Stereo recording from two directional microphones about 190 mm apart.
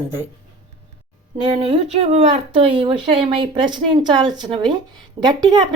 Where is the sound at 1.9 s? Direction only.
35° right (ahead or behind).